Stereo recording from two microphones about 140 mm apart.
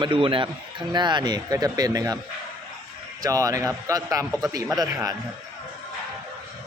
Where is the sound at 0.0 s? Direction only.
35° right (ahead or behind).